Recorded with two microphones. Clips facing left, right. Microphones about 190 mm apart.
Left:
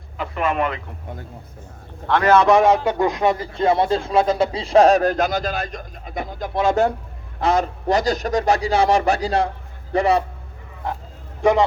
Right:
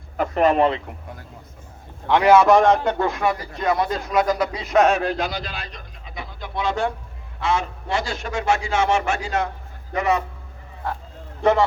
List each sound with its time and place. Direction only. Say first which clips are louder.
0.2 s speech: right 5 dB; 40° right (ahead or behind)
2.0 s a man's voice: right 1 dB; 15° right (ahead or behind)
2.5 s a man's voice: left 1 dB; 5° left (ahead or behind); by 10.2 s 35° left (ahead or behind)